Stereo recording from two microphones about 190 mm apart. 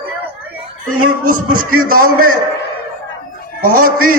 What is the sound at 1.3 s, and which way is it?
A man's voice, 45° right (ahead or behind).